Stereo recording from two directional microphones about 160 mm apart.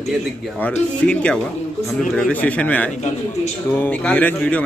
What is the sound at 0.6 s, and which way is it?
A man's voice, 10° left (ahead or behind).